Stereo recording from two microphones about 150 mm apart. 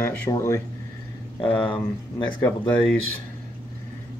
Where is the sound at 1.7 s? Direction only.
30° left (ahead or behind).